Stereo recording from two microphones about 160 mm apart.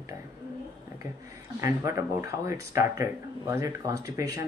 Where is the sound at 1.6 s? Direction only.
20° right (ahead or behind).